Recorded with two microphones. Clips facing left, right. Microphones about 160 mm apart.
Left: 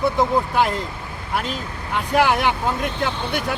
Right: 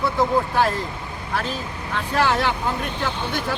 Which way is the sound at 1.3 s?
15° left (ahead or behind).